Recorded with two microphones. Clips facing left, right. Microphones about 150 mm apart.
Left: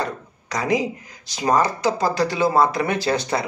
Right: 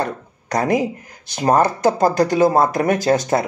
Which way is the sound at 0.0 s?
50° right (ahead or behind).